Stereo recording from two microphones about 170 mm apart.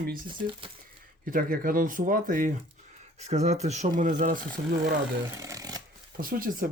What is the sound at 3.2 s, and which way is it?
Speech, 40° right (ahead or behind).